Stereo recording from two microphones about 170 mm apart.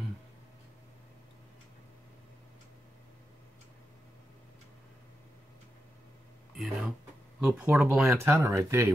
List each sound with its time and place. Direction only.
6.5 s a sound: centre (ahead or behind)
7.3 s speech: 5° right (ahead or behind)
8.2 s speech: 15° right (ahead or behind)